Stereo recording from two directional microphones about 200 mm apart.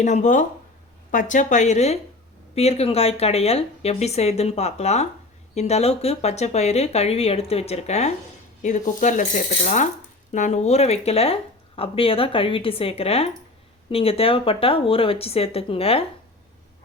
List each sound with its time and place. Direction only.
0.0 s speech: 35° left (ahead or behind)